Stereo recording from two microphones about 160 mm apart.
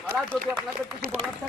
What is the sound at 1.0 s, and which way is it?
Speech, 65° right (ahead or behind).